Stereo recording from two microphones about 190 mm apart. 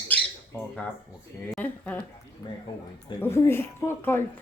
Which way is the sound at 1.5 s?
10° left (ahead or behind).